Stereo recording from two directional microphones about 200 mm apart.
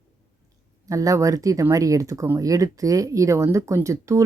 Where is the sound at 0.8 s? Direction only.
15° right (ahead or behind).